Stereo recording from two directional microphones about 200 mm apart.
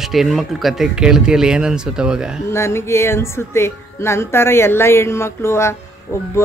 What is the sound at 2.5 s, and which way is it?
Speech, 15° left (ahead or behind).